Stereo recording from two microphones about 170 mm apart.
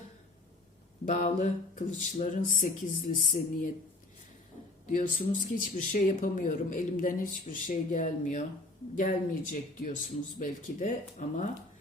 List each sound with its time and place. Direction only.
1.0 s speech: 45° left (ahead or behind)
4.9 s speech: 50° left (ahead or behind)